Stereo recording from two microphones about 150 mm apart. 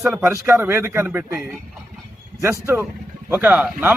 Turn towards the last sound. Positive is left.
turn(degrees=-10)  # may be behind; listen again after turning